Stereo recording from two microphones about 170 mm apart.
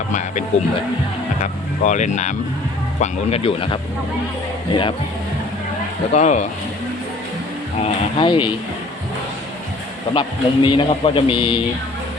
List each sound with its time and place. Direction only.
1.4 s a man's voice: 45° left (ahead or behind); by 4.9 s 30° left (ahead or behind)
6.1 s speech: 45° left (ahead or behind)
7.8 s a man's voice: 35° left (ahead or behind)
10.2 s a man's voice: 30° left (ahead or behind)